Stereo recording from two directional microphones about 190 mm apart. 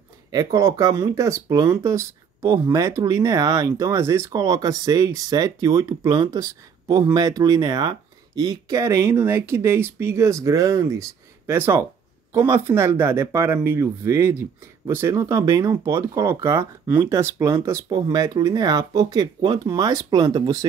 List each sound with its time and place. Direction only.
0.3 s speech: 20° right (ahead or behind)